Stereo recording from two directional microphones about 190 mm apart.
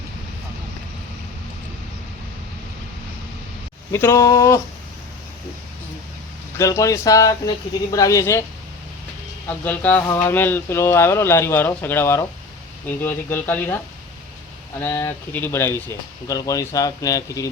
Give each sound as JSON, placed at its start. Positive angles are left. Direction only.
{"t": 3.9, "sound": "speech", "side_deg": 15}
{"t": 6.6, "sound": "speech", "side_deg": 15}
{"t": 9.5, "sound": "speech", "side_deg": 10}
{"t": 14.8, "sound": "speech", "side_deg": 15}